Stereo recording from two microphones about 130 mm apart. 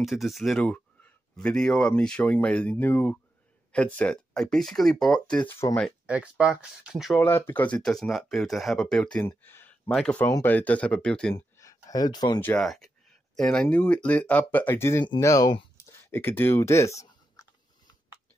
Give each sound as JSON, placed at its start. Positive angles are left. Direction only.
{"t": 0.0, "sound": "speech", "side_deg": 0}
{"t": 5.5, "sound": "speech", "side_deg": 20}
{"t": 6.0, "sound": "speech", "side_deg": -10}
{"t": 7.2, "sound": "speech", "side_deg": 15}
{"t": 9.2, "sound": "a sound", "side_deg": 20}
{"t": 9.9, "sound": "speech", "side_deg": 5}
{"t": 11.3, "sound": "a sound", "side_deg": 25}
{"t": 12.4, "sound": "speech", "side_deg": 15}
{"t": 12.6, "sound": "speech", "side_deg": 0}